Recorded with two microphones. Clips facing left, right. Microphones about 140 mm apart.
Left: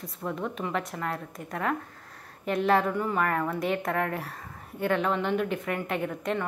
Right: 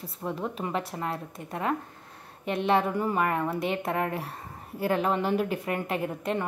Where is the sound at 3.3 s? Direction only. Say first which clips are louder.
Even; 25° right (ahead or behind).